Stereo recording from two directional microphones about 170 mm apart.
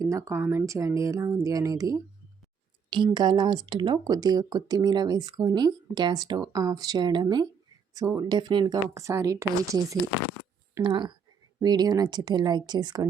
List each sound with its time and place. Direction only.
0.0 s speech: 20° right (ahead or behind)